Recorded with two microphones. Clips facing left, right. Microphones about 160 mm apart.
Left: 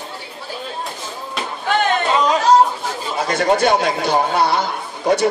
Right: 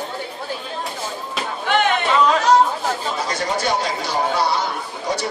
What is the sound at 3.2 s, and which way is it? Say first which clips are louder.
A man's voice: left 9 dB; 60° left (ahead or behind).